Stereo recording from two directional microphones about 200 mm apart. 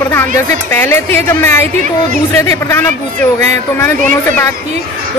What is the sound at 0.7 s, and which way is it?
Speech, 10° left (ahead or behind).